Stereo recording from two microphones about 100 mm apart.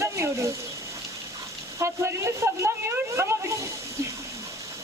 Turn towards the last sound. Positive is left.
turn(degrees=-25)  # may be behind; listen again after turning